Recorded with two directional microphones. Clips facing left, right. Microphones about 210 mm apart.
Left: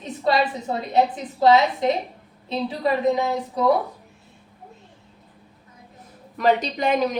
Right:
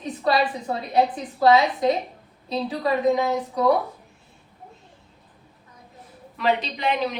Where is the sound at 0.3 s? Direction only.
25° left (ahead or behind).